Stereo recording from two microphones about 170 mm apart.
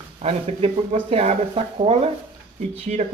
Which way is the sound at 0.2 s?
35° right (ahead or behind).